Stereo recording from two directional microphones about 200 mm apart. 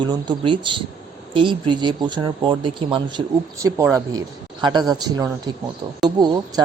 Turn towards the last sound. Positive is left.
turn(degrees=-20)  # may be behind; listen again after turning